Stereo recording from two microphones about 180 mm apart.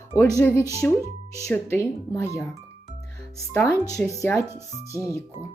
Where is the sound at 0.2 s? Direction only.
15° left (ahead or behind).